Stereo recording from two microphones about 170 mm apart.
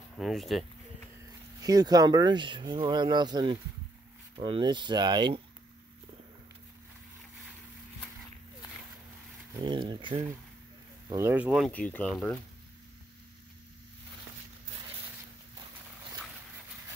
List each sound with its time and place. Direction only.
0.2 s speech: centre (ahead or behind)
1.6 s speech: 20° right (ahead or behind)
9.6 s speech: 25° right (ahead or behind)
11.1 s speech: 15° right (ahead or behind); by 12.4 s 5° left (ahead or behind)